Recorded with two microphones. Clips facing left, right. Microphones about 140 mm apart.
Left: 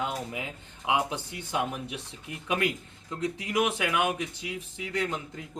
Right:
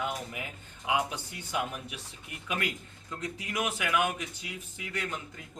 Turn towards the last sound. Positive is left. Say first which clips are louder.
# left 6 dB
turn(degrees=25)  # may be behind; listen again after turning